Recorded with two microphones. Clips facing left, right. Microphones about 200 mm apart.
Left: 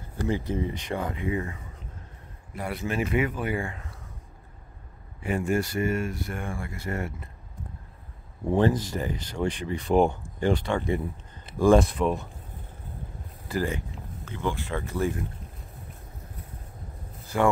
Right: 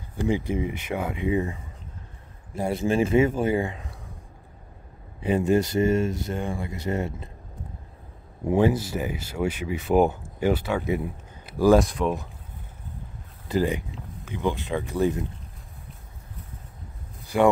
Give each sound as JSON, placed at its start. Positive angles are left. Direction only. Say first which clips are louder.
{"t": 0.2, "sound": "speech", "louder": "right 3 dB", "side_deg": -15}
{"t": 5.2, "sound": "speech", "louder": "right 5 dB", "side_deg": -20}
{"t": 8.5, "sound": "speech", "louder": "right 2 dB", "side_deg": -10}
{"t": 13.5, "sound": "speech", "louder": "right 4 dB", "side_deg": -20}
{"t": 17.3, "sound": "speech", "louder": "right 4 dB", "side_deg": -15}